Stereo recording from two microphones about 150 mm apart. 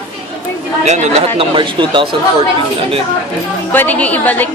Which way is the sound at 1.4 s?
35° right (ahead or behind).